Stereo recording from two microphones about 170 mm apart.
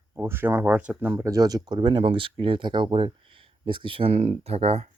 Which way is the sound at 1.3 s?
20° right (ahead or behind).